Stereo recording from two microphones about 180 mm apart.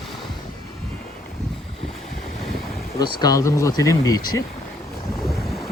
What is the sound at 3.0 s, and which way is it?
Speech, 25° left (ahead or behind).